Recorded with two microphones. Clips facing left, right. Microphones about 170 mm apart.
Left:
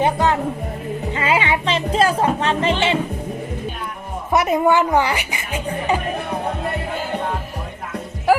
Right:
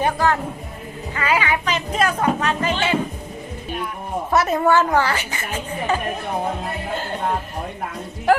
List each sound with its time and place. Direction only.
0.0 s speech: 20° left (ahead or behind)
4.3 s a woman's voice: 15° left (ahead or behind)
8.3 s music: 5° left (ahead or behind)